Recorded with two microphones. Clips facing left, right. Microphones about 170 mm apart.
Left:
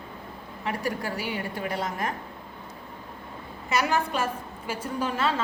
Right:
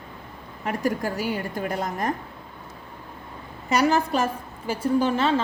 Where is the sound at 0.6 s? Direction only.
45° right (ahead or behind).